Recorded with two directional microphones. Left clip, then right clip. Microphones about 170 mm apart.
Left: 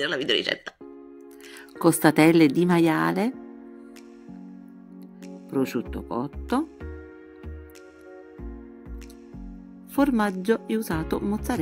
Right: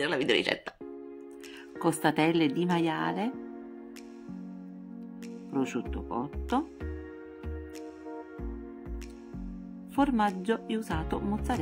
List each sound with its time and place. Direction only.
0.0 s speech: 10° right (ahead or behind)
1.8 s speech: 35° left (ahead or behind)
5.5 s speech: 25° left (ahead or behind)
9.9 s speech: 30° left (ahead or behind)